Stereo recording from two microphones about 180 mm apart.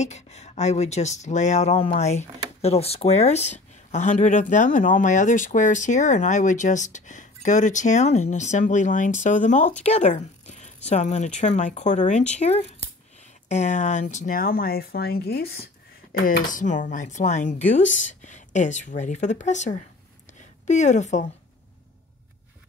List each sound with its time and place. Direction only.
0.0 s speech: 40° left (ahead or behind)
9.8 s a sound: 35° left (ahead or behind)
10.9 s speech: 40° left (ahead or behind)